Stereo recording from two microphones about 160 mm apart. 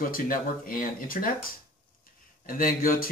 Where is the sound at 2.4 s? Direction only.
60° left (ahead or behind).